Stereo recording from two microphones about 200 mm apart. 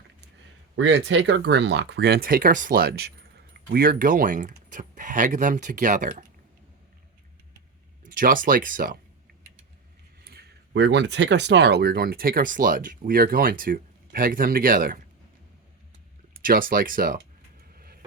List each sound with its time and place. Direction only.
0.8 s speech: 60° right (ahead or behind); by 6.2 s 40° right (ahead or behind)
8.0 s speech: 45° right (ahead or behind)
10.2 s speech: 55° right (ahead or behind)
16.3 s speech: 45° right (ahead or behind)
17.7 s vehicle: 50° right (ahead or behind)